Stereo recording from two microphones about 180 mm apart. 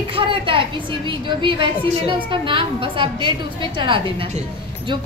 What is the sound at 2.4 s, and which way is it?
A woman's voice, 30° right (ahead or behind).